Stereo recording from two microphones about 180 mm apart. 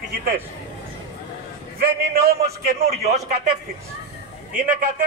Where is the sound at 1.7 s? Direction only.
60° right (ahead or behind).